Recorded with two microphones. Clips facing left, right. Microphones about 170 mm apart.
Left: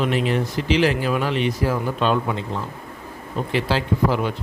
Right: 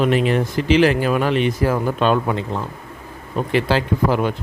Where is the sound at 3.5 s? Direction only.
55° right (ahead or behind).